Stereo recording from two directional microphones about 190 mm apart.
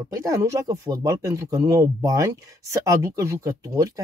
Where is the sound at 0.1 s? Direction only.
15° right (ahead or behind).